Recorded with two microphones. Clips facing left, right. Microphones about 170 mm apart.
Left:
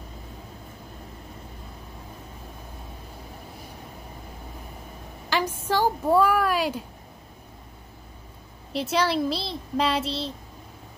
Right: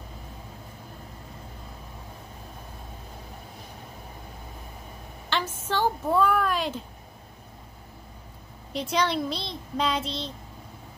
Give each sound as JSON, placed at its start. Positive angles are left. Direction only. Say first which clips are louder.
{"t": 5.3, "sound": "a woman's voice", "louder": "left 4 dB", "side_deg": 10}
{"t": 8.7, "sound": "speech", "louder": "left 2 dB", "side_deg": 5}
{"t": 10.0, "sound": "a child's voice", "louder": "left 3 dB", "side_deg": 30}